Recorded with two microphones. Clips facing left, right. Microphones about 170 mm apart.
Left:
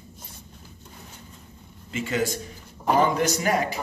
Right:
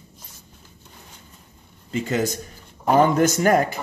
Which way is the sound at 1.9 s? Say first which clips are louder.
Right 3 dB; 40° right (ahead or behind).